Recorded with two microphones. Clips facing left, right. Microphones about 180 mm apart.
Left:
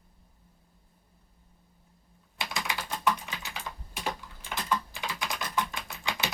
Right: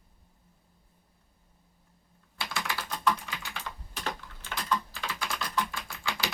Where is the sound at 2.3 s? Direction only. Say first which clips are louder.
Left 1 dB; 20° left (ahead or behind).